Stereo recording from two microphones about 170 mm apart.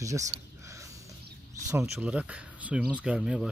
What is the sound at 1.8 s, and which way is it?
Speech, 5° right (ahead or behind).